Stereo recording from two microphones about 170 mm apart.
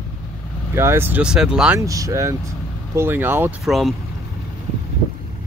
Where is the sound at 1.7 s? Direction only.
20° right (ahead or behind).